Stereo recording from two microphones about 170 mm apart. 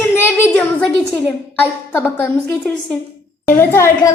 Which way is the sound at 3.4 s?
15° left (ahead or behind).